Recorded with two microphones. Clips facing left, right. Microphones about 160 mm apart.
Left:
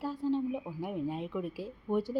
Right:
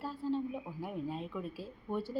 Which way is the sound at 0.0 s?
15° left (ahead or behind).